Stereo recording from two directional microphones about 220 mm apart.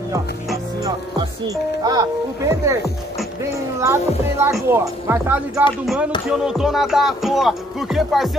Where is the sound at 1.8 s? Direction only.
15° right (ahead or behind).